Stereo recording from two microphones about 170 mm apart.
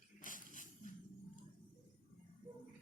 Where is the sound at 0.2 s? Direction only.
50° left (ahead or behind).